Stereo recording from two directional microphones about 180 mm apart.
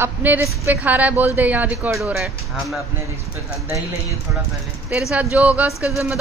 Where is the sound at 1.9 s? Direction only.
Centre (ahead or behind).